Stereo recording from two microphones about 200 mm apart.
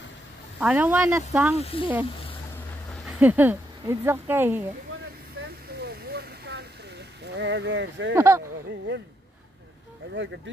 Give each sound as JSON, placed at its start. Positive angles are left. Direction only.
{"t": 0.6, "sound": "speech", "side_deg": -10}
{"t": 1.6, "sound": "speech", "side_deg": 30}
{"t": 3.2, "sound": "speech", "side_deg": -10}
{"t": 5.9, "sound": "a sound", "side_deg": -55}
{"t": 7.3, "sound": "speech", "side_deg": -60}
{"t": 8.1, "sound": "speech", "side_deg": -15}